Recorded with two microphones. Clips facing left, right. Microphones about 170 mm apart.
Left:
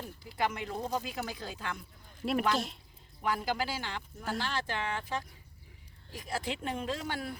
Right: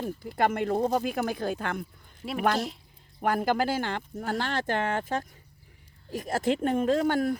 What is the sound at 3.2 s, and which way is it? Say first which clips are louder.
Speech: right 7 dB; 55° right (ahead or behind).